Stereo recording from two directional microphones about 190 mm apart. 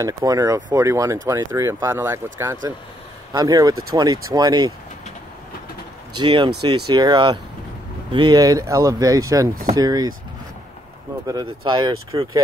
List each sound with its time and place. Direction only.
0.0 s speech: 20° right (ahead or behind)
6.2 s speech: 25° right (ahead or behind)
11.2 s speech: 20° right (ahead or behind)